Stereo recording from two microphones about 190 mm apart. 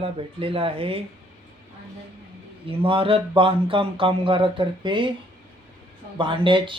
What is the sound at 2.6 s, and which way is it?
Speech, 30° right (ahead or behind).